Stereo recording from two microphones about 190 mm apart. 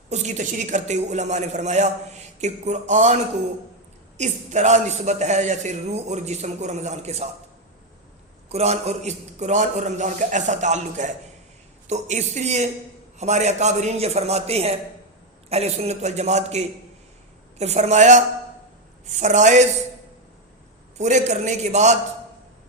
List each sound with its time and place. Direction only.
0.1 s a man's voice: 40° right (ahead or behind)
4.2 s a man's voice: 40° right (ahead or behind)
8.4 s a man's voice: 35° right (ahead or behind)
21.0 s a man's voice: 40° right (ahead or behind)